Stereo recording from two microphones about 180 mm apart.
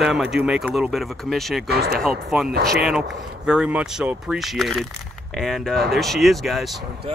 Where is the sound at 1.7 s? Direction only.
60° right (ahead or behind).